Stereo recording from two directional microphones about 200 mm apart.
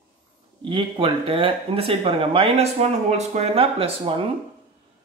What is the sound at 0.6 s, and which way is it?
Speech, 25° right (ahead or behind).